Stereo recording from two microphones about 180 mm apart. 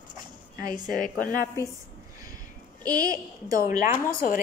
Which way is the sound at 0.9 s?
50° left (ahead or behind).